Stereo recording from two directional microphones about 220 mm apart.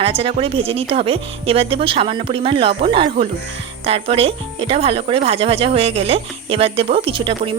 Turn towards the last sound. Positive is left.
turn(degrees=-25)  # may be behind; listen again after turning